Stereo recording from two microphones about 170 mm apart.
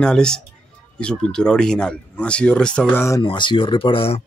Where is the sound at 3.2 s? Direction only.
30° left (ahead or behind).